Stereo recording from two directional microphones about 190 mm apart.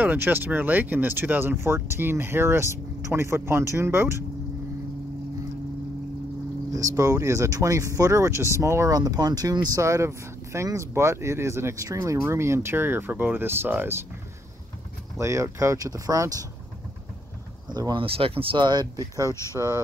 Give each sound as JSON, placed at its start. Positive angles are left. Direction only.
{"t": 0.0, "sound": "speech", "side_deg": -10}
{"t": 6.7, "sound": "speech", "side_deg": -15}
{"t": 15.1, "sound": "speech", "side_deg": -15}
{"t": 17.6, "sound": "speech", "side_deg": -20}
{"t": 19.5, "sound": "speech", "side_deg": 15}